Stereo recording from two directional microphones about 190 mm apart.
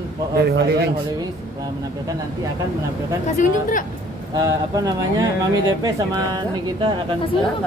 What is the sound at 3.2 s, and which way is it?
Speech, 40° left (ahead or behind).